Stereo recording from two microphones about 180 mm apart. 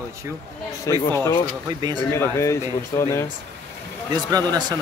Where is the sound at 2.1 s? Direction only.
15° left (ahead or behind).